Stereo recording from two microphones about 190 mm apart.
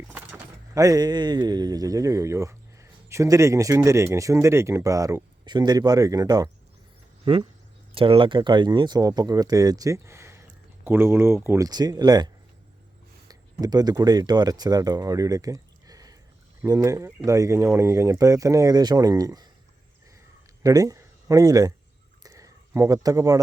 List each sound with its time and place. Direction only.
0.1 s speech: 15° right (ahead or behind)
7.9 s speech: 30° right (ahead or behind)
20.6 s speech: 20° right (ahead or behind)
22.2 s a sound: 15° right (ahead or behind)